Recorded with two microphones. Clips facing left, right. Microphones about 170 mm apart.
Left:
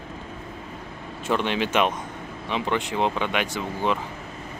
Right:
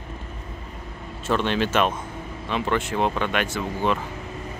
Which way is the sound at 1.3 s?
15° left (ahead or behind).